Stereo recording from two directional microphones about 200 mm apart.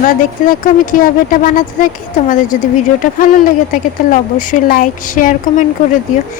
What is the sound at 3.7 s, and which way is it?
Speech, 40° left (ahead or behind).